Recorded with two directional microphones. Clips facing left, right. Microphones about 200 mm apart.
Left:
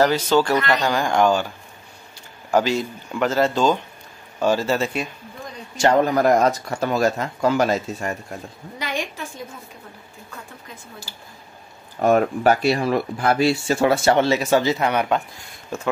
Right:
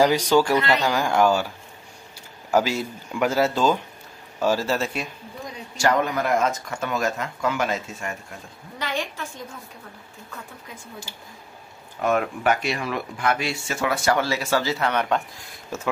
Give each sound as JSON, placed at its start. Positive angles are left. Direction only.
{"t": 0.0, "sound": "speech", "side_deg": -10}
{"t": 2.5, "sound": "speech", "side_deg": -5}
{"t": 5.8, "sound": "speech", "side_deg": 30}
{"t": 8.7, "sound": "a woman's voice", "side_deg": 15}
{"t": 11.1, "sound": "speech", "side_deg": 35}
{"t": 15.7, "sound": "speech", "side_deg": -5}